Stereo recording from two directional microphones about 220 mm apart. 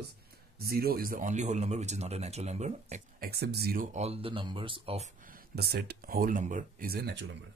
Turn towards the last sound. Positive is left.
turn(degrees=-50)  # may be behind; listen again after turning